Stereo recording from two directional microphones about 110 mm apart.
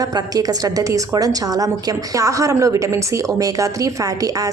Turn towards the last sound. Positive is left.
turn(degrees=-30)  # may be behind; listen again after turning